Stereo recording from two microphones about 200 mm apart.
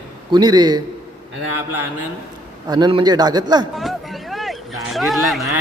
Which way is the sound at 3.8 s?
Centre (ahead or behind).